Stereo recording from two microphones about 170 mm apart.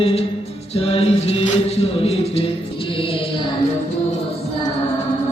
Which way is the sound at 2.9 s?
30° left (ahead or behind).